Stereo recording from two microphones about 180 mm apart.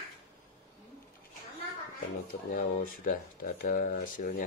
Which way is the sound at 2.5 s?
50° left (ahead or behind).